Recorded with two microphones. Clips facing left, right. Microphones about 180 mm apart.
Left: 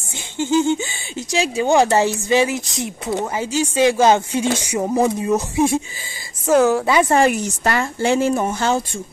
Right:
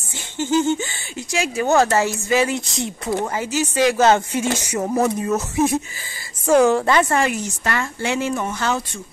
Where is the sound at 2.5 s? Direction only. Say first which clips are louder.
Even; centre (ahead or behind).